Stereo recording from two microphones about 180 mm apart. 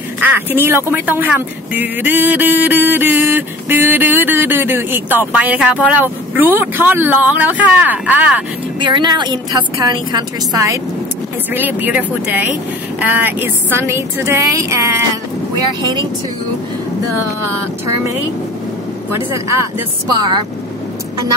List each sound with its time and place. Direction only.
0.2 s speech: 10° right (ahead or behind)
8.7 s a woman's voice: 25° right (ahead or behind)
19.1 s a woman's voice: 15° right (ahead or behind)